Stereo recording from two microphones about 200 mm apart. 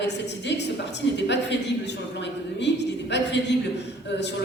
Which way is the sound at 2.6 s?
60° left (ahead or behind).